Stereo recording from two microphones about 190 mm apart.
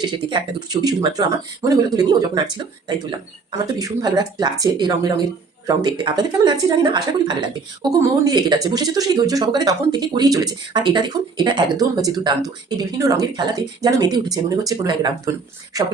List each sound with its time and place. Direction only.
0.0 s speech: 25° right (ahead or behind)